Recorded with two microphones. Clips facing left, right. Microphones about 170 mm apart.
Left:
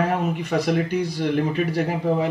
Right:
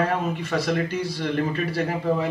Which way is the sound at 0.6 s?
5° left (ahead or behind).